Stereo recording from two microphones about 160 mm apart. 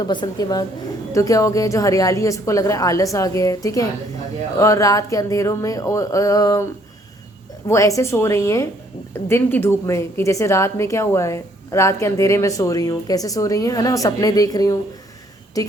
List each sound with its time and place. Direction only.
0.0 s a woman's voice: 25° left (ahead or behind)
7.7 s a woman's voice: 20° left (ahead or behind)